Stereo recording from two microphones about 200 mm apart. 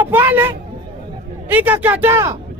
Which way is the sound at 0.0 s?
10° right (ahead or behind).